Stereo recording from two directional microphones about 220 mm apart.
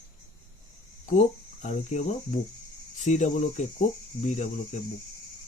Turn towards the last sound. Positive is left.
turn(degrees=35)  # may be behind; listen again after turning